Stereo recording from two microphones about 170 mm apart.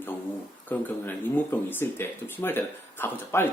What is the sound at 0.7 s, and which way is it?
Speech, 10° left (ahead or behind).